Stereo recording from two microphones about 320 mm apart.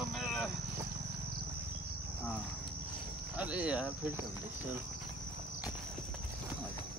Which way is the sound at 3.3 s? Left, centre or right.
Centre.